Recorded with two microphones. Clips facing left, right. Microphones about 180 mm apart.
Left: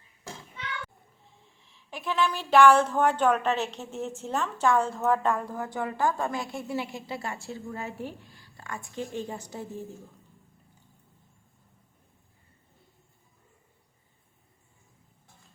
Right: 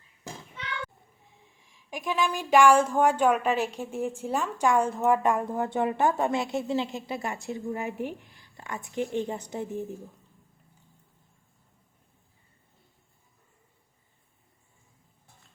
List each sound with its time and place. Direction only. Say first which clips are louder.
1.5 s speech: right 3 dB; 15° right (ahead or behind)